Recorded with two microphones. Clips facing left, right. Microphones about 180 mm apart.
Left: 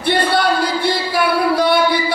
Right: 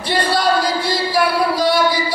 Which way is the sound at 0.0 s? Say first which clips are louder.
Left 2 dB; 60° left (ahead or behind).